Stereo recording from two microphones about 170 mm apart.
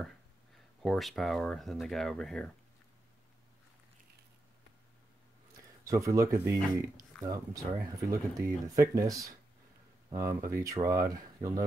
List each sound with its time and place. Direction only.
0.8 s speech: centre (ahead or behind)
5.9 s speech: 20° right (ahead or behind)